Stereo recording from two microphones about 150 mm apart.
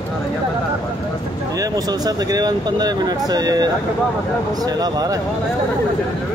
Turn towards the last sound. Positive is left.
turn(degrees=-25)  # may be behind; listen again after turning